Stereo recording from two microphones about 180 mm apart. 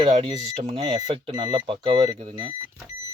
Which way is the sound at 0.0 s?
30° right (ahead or behind).